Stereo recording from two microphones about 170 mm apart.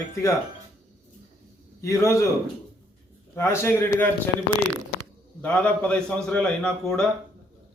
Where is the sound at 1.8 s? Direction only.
15° left (ahead or behind).